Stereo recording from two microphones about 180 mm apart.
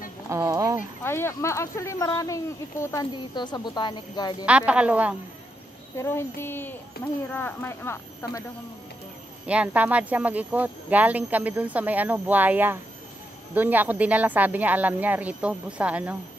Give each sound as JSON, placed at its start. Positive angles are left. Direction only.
{"t": 0.3, "sound": "a sound", "side_deg": -15}
{"t": 1.0, "sound": "speech", "side_deg": 15}
{"t": 4.5, "sound": "speech", "side_deg": -5}
{"t": 5.9, "sound": "speech", "side_deg": 15}
{"t": 9.5, "sound": "speech", "side_deg": -10}